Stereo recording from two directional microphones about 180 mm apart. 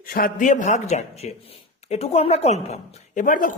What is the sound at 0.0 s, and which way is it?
Speech, 50° left (ahead or behind).